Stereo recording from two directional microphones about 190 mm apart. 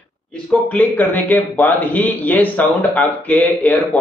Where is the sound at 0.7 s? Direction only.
10° left (ahead or behind).